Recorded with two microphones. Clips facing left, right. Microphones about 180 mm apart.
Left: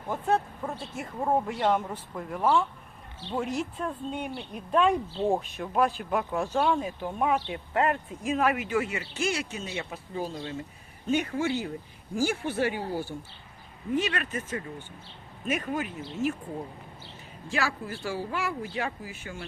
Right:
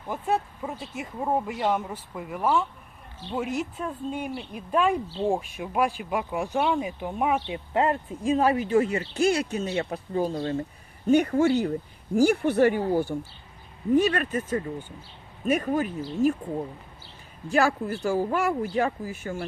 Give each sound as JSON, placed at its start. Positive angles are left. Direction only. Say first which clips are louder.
{"t": 0.1, "sound": "speech", "louder": "even", "side_deg": -5}
{"t": 9.7, "sound": "speech", "louder": "right 6 dB", "side_deg": -50}
{"t": 12.4, "sound": "speech", "louder": "right 8 dB", "side_deg": -55}
{"t": 14.2, "sound": "speech", "louder": "right 6 dB", "side_deg": -45}
{"t": 17.5, "sound": "speech", "louder": "right 8 dB", "side_deg": -45}